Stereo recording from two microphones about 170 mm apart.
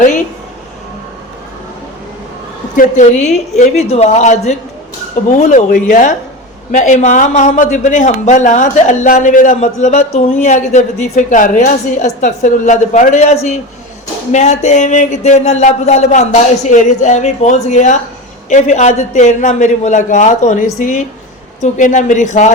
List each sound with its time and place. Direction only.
2.7 s a woman's voice: 45° left (ahead or behind)